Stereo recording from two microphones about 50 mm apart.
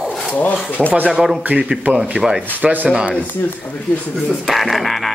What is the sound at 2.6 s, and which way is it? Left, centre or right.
Speech, right.